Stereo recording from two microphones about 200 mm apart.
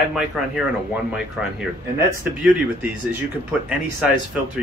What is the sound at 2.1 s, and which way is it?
Speech, 10° right (ahead or behind).